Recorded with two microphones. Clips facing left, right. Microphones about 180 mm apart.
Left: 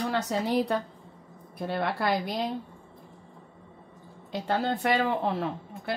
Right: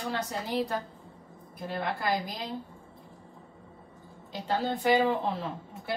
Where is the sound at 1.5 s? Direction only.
65° left (ahead or behind).